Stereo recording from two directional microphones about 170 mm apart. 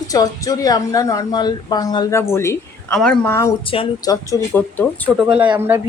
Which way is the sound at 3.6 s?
30° left (ahead or behind).